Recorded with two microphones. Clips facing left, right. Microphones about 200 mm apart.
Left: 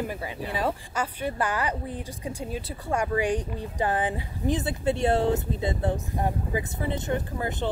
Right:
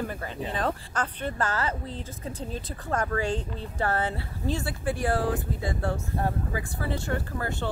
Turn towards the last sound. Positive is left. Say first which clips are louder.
# left 2 dB
turn(degrees=20)  # may be behind; listen again after turning